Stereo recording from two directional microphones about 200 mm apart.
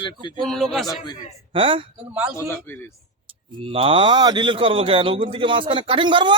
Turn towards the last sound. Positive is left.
turn(degrees=-25)  # may be behind; listen again after turning